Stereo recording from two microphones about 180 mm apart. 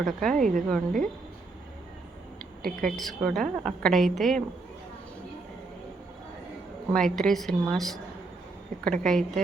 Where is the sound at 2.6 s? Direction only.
50° right (ahead or behind).